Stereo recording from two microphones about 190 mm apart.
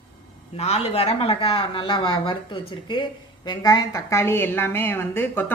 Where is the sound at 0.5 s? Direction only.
35° left (ahead or behind).